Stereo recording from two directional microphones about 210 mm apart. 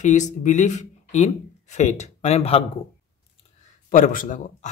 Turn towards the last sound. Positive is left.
turn(degrees=40)  # may be behind; listen again after turning